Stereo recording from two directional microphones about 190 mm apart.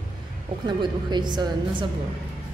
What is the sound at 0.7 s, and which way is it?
A woman's voice, 25° right (ahead or behind).